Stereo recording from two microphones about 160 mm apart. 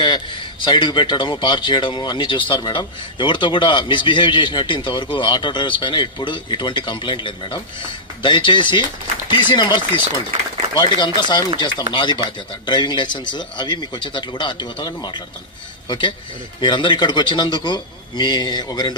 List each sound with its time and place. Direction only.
0.7 s speech: 30° left (ahead or behind)